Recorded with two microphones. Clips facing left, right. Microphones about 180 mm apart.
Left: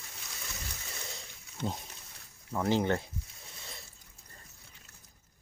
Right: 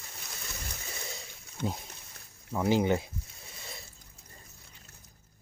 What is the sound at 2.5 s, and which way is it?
Speech, 10° right (ahead or behind).